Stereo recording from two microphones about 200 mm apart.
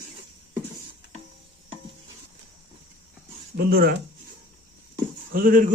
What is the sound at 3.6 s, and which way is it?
Speech, 50° right (ahead or behind).